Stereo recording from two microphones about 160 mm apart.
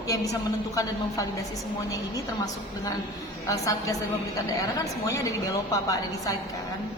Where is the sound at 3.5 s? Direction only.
20° left (ahead or behind).